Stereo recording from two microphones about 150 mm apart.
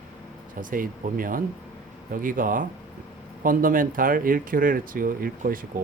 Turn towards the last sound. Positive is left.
turn(degrees=-70)  # may be behind; listen again after turning